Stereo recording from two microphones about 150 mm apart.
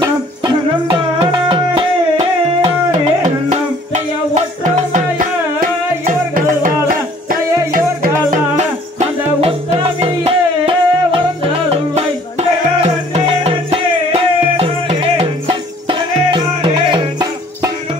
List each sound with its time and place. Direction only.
0.0 s music: 25° right (ahead or behind)
1.2 s music: 40° right (ahead or behind)